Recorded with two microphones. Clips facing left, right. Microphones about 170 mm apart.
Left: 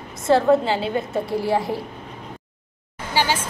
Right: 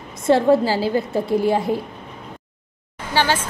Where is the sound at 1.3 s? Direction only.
20° right (ahead or behind).